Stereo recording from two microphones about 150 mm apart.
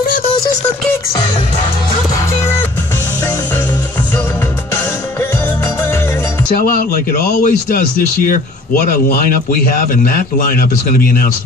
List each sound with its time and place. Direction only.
6.5 s a man's voice: 70° left (ahead or behind)